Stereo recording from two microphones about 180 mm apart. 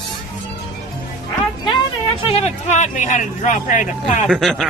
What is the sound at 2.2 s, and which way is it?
Speech, 35° left (ahead or behind).